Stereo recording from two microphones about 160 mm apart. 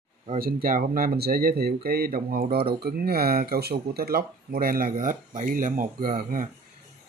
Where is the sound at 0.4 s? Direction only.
65° right (ahead or behind).